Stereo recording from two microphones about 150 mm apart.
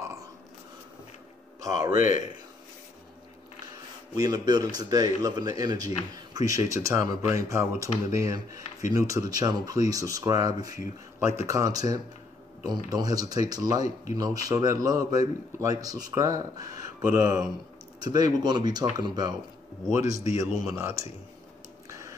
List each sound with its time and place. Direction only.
1.6 s a man's voice: 25° right (ahead or behind)
2.0 s a man's voice: 60° left (ahead or behind)
4.1 s a man's voice: 25° right (ahead or behind)
21.8 s tick: 20° right (ahead or behind)